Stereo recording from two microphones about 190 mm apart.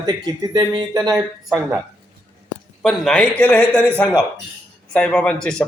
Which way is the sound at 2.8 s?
Centre (ahead or behind).